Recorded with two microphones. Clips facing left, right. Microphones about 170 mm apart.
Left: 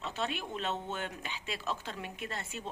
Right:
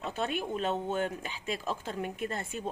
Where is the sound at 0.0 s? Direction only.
50° right (ahead or behind).